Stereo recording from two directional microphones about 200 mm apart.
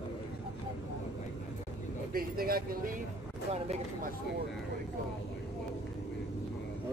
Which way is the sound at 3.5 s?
35° right (ahead or behind).